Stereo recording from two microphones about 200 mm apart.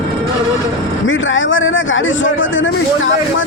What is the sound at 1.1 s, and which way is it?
Speech, 75° left (ahead or behind).